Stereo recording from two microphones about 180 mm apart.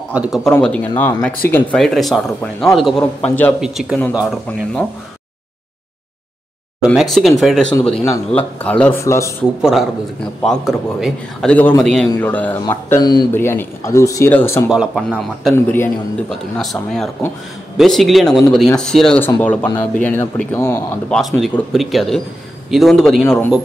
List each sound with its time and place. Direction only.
0.1 s speech: 5° right (ahead or behind)
3.6 s a man's voice: 5° right (ahead or behind)
6.8 s speech: 5° right (ahead or behind); by 9.3 s 15° left (ahead or behind)
9.6 s speech: centre (ahead or behind)
12.9 s speech: 25° left (ahead or behind)
13.3 s speech: 10° left (ahead or behind)
14.7 s speech: 5° right (ahead or behind)
15.5 s speech: 10° left (ahead or behind)
16.3 s speech: centre (ahead or behind)
17.7 s speech: centre (ahead or behind)
21.1 s speech: centre (ahead or behind)